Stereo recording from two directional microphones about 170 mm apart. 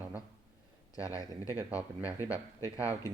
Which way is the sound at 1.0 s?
20° left (ahead or behind).